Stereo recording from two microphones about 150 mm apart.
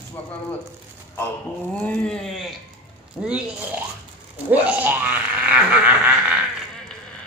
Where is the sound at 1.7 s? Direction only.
5° left (ahead or behind).